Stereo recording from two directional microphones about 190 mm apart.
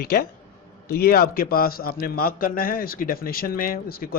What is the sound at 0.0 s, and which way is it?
A man's voice, 50° left (ahead or behind).